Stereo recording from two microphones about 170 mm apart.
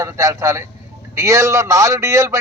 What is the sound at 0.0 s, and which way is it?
A man's voice, 20° right (ahead or behind).